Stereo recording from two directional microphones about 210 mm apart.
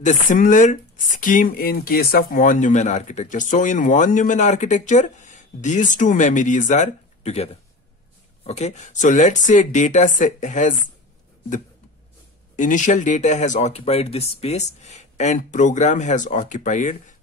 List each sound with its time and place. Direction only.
0.0 s speech: 35° left (ahead or behind)
12.5 s speech: 35° left (ahead or behind)